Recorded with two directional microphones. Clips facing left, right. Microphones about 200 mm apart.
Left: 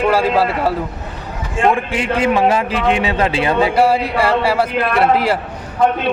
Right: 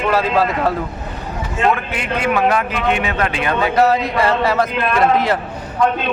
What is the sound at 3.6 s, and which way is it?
A man's voice, 10° left (ahead or behind).